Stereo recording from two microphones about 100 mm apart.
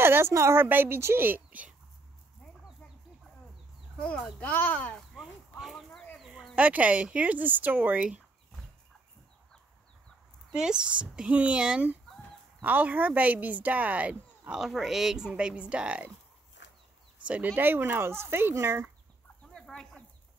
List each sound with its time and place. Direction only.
0.0 s a woman's voice: 25° right (ahead or behind)
4.0 s a child's voice: 10° left (ahead or behind)
5.1 s a sound: 5° right (ahead or behind)
6.1 s speech: centre (ahead or behind)
10.5 s speech: 10° right (ahead or behind)
14.6 s speech: 5° right (ahead or behind)
17.2 s a woman's voice: 15° right (ahead or behind)
19.4 s chicken: 10° left (ahead or behind)